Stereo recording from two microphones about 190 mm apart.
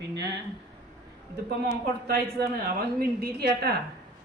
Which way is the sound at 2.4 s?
55° right (ahead or behind).